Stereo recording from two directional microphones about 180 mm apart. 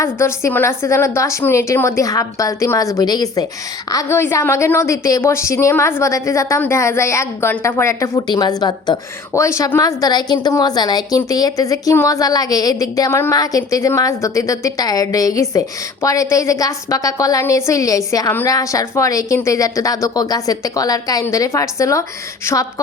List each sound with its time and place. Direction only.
0.0 s a woman's voice: 15° left (ahead or behind)